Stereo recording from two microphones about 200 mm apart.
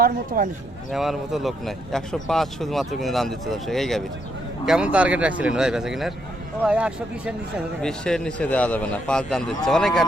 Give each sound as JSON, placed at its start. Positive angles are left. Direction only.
{"t": 0.0, "sound": "speech", "side_deg": -45}
{"t": 0.9, "sound": "speech", "side_deg": 0}